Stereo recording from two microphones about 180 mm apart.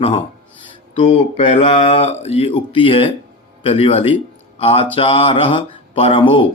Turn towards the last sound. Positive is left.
turn(degrees=30)  # may be behind; listen again after turning